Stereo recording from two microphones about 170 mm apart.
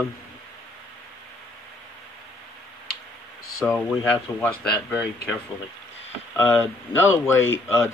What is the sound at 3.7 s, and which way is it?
Speech, 5° left (ahead or behind).